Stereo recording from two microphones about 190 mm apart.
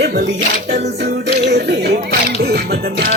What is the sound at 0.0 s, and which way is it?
Music, 55° right (ahead or behind).